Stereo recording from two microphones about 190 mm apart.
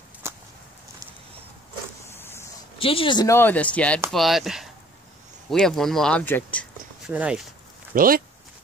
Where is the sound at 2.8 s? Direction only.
30° left (ahead or behind); by 6.6 s 10° left (ahead or behind).